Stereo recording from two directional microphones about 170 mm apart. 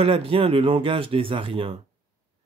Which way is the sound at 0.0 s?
35° right (ahead or behind).